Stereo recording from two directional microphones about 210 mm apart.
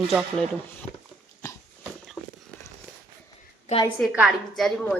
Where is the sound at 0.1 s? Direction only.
Centre (ahead or behind).